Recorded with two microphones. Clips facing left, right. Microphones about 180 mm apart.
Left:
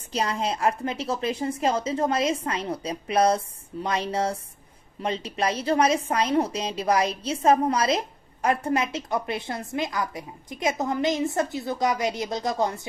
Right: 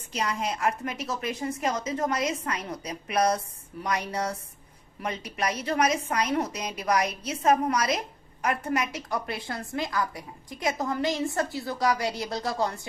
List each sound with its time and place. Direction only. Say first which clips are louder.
0.1 s a woman's voice: left 3 dB; 30° left (ahead or behind)